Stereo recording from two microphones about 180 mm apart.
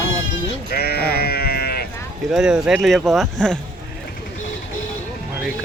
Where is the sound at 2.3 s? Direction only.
5° right (ahead or behind).